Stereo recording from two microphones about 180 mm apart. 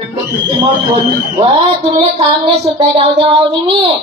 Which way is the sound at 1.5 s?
30° right (ahead or behind).